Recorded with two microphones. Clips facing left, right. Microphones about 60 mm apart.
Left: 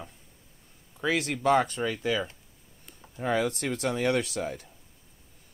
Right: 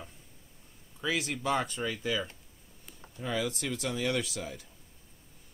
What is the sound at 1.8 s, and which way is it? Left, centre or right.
Speech, left.